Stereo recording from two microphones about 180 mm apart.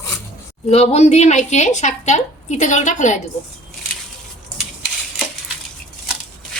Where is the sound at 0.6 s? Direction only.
35° left (ahead or behind).